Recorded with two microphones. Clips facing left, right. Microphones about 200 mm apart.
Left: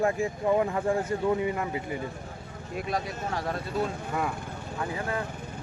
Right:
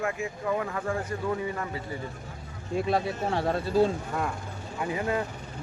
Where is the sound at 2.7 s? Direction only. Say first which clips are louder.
Right 5 dB; 30° right (ahead or behind).